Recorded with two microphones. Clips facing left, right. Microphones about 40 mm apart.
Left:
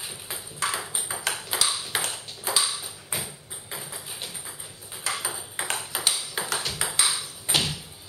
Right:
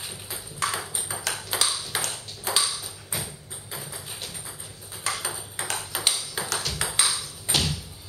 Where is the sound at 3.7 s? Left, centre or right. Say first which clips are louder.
Even; centre.